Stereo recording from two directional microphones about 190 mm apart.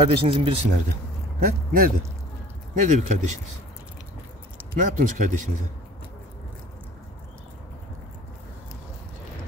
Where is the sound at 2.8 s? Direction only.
40° right (ahead or behind).